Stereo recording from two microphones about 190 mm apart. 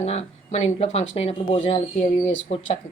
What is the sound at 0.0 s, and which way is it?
A woman's voice, 35° left (ahead or behind).